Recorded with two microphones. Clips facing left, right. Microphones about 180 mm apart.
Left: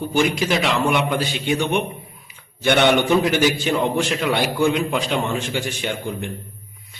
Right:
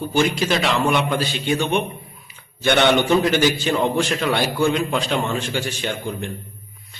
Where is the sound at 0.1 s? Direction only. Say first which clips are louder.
Even; 15° left (ahead or behind).